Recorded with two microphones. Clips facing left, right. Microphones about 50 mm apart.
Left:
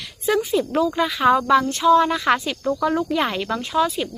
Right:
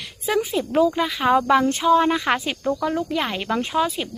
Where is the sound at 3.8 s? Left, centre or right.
Centre.